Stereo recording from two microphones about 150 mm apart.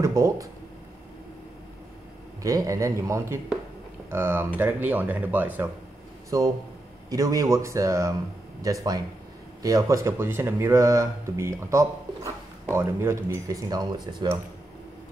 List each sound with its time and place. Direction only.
0.0 s speech: 20° right (ahead or behind)
2.4 s speech: 20° right (ahead or behind)
6.3 s speech: 25° right (ahead or behind)